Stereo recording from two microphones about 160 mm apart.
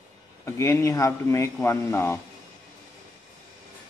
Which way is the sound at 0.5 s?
20° left (ahead or behind).